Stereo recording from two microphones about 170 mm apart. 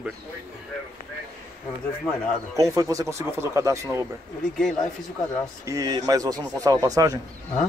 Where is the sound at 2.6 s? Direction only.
20° right (ahead or behind).